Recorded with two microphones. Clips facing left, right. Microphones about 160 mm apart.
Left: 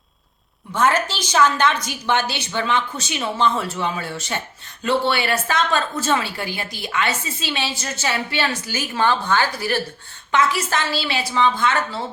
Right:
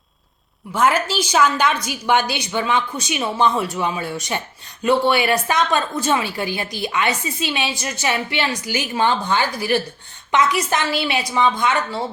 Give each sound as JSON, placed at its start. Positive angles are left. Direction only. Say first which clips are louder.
{"t": 0.7, "sound": "a woman's voice", "louder": "right 1 dB", "side_deg": -10}